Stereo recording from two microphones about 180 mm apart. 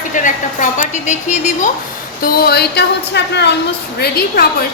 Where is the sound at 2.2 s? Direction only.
55° left (ahead or behind); by 3.5 s 70° left (ahead or behind).